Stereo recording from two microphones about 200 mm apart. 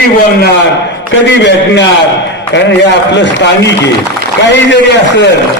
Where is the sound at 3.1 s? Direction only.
60° left (ahead or behind).